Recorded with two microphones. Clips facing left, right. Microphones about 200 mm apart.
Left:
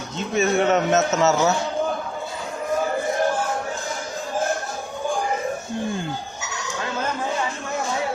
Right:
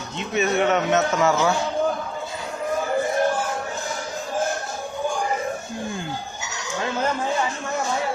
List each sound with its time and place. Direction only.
0.3 s speech: 45° left (ahead or behind)
0.9 s speech: 25° left (ahead or behind)